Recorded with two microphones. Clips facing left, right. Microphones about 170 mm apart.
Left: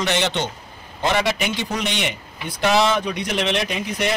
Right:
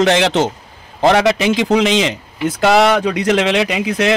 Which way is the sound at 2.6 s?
80° right.